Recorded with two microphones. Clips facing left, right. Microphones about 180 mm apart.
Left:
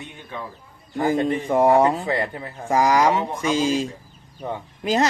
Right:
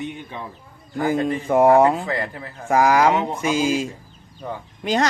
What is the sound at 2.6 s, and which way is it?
Speech, 5° right (ahead or behind).